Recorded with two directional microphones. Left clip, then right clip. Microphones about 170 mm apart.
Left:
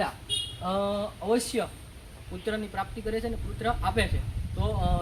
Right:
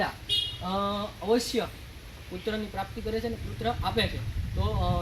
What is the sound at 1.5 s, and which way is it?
Speech, centre (ahead or behind).